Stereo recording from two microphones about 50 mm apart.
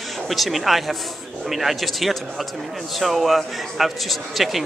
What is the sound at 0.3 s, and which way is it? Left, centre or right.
A woman's voice, centre.